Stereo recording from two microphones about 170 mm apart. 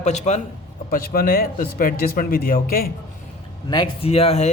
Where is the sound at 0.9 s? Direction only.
60° left (ahead or behind).